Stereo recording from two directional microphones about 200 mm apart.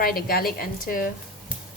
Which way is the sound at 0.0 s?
50° left (ahead or behind).